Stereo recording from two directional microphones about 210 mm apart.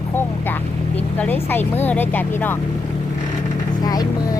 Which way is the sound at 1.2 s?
10° left (ahead or behind).